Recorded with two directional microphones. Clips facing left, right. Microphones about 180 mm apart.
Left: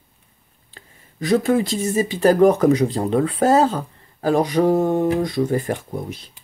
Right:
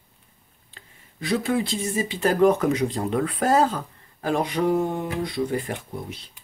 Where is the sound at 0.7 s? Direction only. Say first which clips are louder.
Left 4 dB; 45° left (ahead or behind).